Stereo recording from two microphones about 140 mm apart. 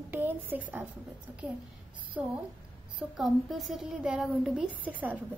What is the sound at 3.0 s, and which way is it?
A woman's voice, centre (ahead or behind).